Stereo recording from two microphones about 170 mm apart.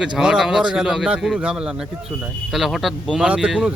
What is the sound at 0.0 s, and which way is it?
A man's voice, 5° right (ahead or behind).